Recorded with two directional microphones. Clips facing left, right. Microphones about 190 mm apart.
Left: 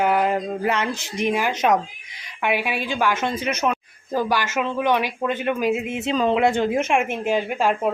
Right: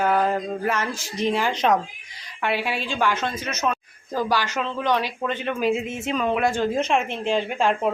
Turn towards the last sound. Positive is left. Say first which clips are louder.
# left 1 dB
turn(degrees=5)  # may be behind; listen again after turning